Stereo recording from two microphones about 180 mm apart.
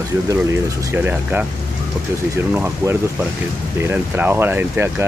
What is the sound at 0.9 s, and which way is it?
Speech, 10° right (ahead or behind).